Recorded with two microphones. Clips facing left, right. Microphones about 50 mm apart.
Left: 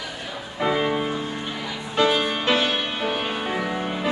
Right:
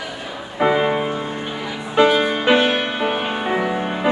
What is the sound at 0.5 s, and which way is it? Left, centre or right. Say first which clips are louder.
Music: right 5 dB; right.